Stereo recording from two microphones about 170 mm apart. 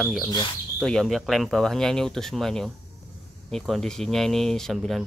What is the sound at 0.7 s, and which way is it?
Speech, centre (ahead or behind).